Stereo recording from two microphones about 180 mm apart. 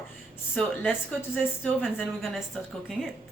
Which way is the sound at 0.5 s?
5° left (ahead or behind).